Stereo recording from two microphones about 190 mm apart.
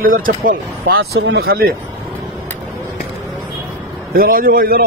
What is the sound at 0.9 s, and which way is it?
Speech, 85° right.